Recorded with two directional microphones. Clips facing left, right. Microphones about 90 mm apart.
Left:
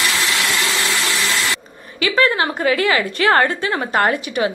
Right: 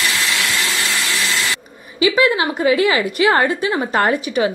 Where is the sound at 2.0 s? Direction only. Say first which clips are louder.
Right 2 dB; 15° right (ahead or behind).